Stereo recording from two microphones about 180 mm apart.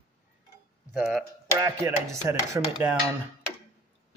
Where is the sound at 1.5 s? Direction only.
15° right (ahead or behind).